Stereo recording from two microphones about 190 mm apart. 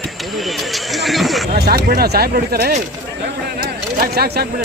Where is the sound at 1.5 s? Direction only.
55° right (ahead or behind).